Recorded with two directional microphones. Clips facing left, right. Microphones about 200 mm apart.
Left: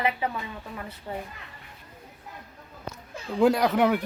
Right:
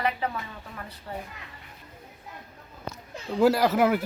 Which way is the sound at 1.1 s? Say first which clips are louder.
Left 2 dB; 20° left (ahead or behind).